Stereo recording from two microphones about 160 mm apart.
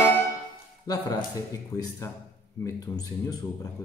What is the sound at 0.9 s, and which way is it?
A man's voice, 25° left (ahead or behind).